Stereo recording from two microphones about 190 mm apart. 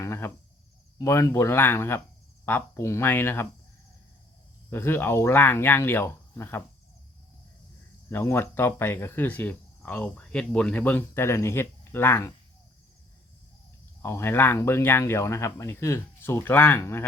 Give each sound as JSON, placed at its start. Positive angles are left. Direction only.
{"t": 0.0, "sound": "a sound", "side_deg": 15}
{"t": 0.9, "sound": "speech", "side_deg": 15}
{"t": 4.7, "sound": "speech", "side_deg": 10}
{"t": 8.1, "sound": "speech", "side_deg": 10}
{"t": 14.0, "sound": "speech", "side_deg": 15}